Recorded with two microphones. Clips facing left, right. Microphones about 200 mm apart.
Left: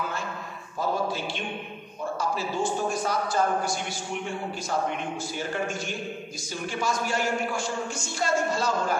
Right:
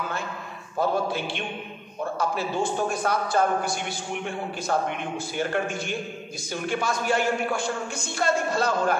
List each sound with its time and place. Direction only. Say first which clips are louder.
0.7 s a man's voice: right 3 dB; 60° right (ahead or behind)